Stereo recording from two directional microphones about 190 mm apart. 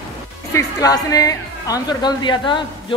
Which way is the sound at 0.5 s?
20° left (ahead or behind).